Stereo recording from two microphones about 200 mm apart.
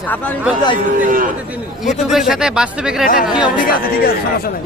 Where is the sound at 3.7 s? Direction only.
45° left (ahead or behind).